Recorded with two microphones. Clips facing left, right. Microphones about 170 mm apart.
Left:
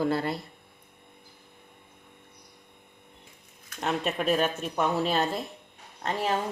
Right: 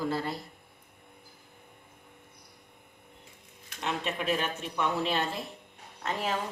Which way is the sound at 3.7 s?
45° left (ahead or behind).